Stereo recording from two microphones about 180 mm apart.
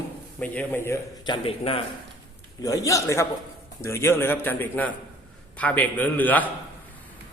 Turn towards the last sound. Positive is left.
turn(degrees=10)  # may be behind; listen again after turning